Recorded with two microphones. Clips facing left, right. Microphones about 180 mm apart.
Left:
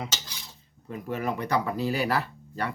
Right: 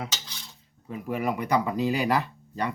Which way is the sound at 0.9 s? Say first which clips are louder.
Right 2 dB; 5° right (ahead or behind).